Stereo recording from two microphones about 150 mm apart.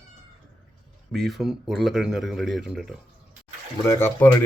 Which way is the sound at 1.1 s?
Centre (ahead or behind).